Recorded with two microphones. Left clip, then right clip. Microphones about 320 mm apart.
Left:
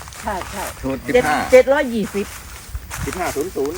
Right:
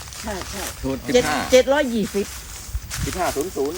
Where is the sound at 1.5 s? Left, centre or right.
Left.